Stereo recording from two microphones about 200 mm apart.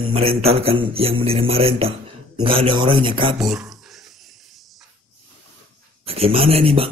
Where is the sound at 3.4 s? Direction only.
Centre (ahead or behind).